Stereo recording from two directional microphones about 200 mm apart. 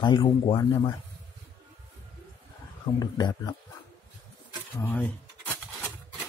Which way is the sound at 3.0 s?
20° left (ahead or behind).